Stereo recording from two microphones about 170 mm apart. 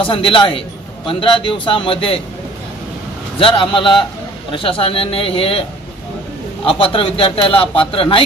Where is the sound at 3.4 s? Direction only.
30° left (ahead or behind).